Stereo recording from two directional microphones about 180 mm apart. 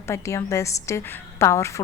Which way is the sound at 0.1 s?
15° left (ahead or behind).